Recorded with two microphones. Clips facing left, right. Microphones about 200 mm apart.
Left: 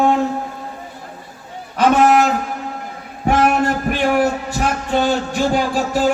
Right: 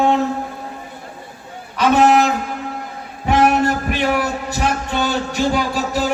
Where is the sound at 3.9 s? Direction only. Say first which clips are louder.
Left 3 dB; 50° left (ahead or behind).